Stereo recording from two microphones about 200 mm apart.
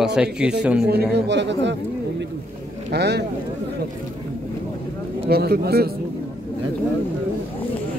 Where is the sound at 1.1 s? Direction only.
60° right (ahead or behind).